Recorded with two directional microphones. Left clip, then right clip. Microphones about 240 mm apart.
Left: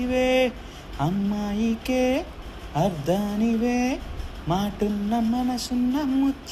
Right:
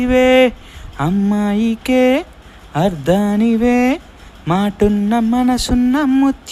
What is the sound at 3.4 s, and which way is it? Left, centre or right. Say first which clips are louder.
Mantra: right 10 dB; right.